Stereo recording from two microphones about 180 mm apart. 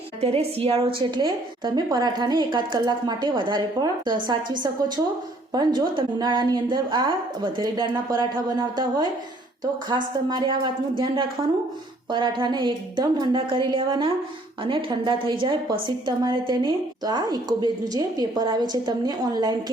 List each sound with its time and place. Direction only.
0.2 s a woman's voice: 35° right (ahead or behind)
5.5 s a woman's voice: 25° right (ahead or behind)